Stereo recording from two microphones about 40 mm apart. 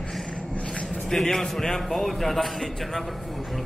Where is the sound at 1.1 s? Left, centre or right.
Centre.